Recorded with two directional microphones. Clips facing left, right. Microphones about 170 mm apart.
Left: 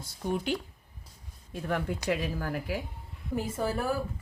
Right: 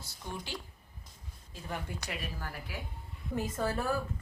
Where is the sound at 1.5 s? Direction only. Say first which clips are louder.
Left 9 dB; 70° left (ahead or behind).